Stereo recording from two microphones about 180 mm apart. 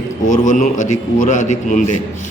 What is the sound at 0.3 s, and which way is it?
A man's voice, 45° left (ahead or behind).